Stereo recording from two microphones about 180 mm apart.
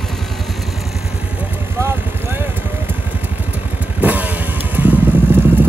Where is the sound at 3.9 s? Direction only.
10° right (ahead or behind).